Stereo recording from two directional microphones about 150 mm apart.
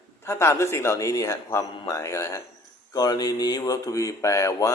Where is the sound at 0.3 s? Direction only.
20° left (ahead or behind).